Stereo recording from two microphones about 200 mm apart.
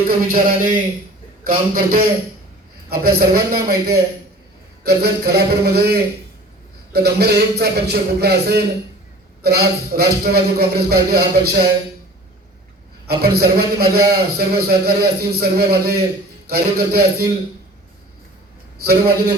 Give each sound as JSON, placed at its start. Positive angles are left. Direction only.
{"t": 0.1, "sound": "a man's voice", "side_deg": -45}
{"t": 13.1, "sound": "a man's voice", "side_deg": -50}
{"t": 18.8, "sound": "a man's voice", "side_deg": -50}